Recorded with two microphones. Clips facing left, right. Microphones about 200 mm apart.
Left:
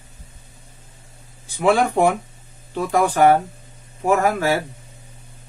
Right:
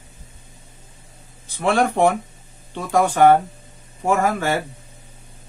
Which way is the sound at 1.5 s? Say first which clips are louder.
Left 1 dB; 10° left (ahead or behind).